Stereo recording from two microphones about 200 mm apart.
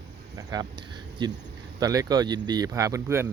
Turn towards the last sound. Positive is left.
turn(degrees=-15)  # may be behind; listen again after turning